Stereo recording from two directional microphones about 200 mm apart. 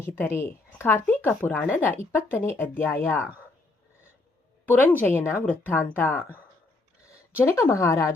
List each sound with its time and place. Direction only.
0.0 s speech: 10° left (ahead or behind)
4.6 s speech: 10° left (ahead or behind)
7.4 s speech: 15° left (ahead or behind)